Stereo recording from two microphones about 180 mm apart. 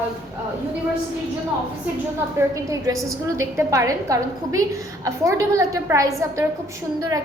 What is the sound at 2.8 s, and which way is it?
A woman's voice, 15° right (ahead or behind).